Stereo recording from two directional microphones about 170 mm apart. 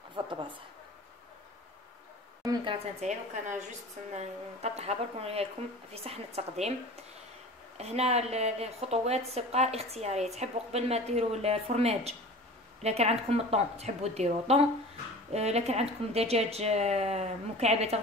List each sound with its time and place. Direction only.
0.1 s speech: 30° right (ahead or behind)
2.4 s speech: 25° right (ahead or behind)
3.1 s a woman's voice: 45° right (ahead or behind)
7.7 s a woman's voice: 40° right (ahead or behind)